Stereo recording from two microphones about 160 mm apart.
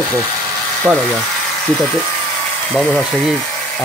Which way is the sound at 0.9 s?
5° right (ahead or behind).